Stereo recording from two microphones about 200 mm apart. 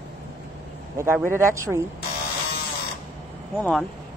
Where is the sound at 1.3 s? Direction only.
15° right (ahead or behind).